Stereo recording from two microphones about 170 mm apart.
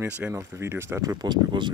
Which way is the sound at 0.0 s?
15° right (ahead or behind).